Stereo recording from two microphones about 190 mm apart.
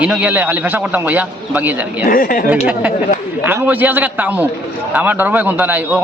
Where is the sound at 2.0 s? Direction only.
50° left (ahead or behind).